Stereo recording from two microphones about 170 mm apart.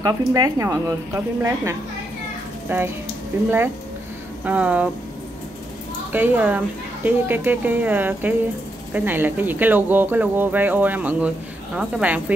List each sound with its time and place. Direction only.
0.0 s speech: 20° right (ahead or behind)
6.1 s speech: 10° right (ahead or behind)